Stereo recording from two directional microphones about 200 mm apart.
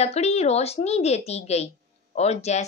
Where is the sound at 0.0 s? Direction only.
30° left (ahead or behind).